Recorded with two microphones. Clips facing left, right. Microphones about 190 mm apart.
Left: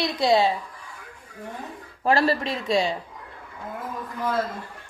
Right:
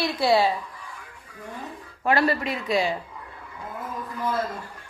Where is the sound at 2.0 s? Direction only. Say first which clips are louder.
Left 1 dB; 30° left (ahead or behind).